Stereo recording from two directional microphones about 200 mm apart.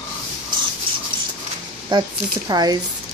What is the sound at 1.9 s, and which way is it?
Speech, 25° right (ahead or behind).